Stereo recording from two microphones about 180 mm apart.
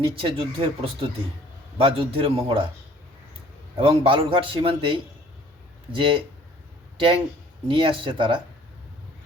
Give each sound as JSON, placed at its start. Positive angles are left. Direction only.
{"t": 0.0, "sound": "speech", "side_deg": -30}
{"t": 3.8, "sound": "a man's voice", "side_deg": -30}